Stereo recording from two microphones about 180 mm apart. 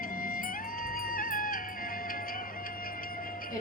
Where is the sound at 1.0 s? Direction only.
50° left (ahead or behind).